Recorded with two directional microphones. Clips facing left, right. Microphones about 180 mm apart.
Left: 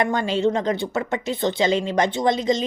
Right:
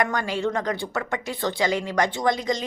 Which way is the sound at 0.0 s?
25° left (ahead or behind).